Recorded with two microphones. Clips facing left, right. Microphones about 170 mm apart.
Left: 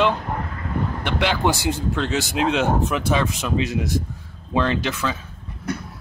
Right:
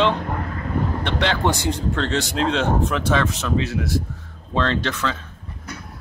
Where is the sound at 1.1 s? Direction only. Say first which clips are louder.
Left 1 dB; 5° left (ahead or behind).